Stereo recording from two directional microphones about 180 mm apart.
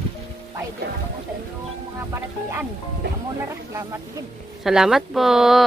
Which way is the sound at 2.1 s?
15° right (ahead or behind).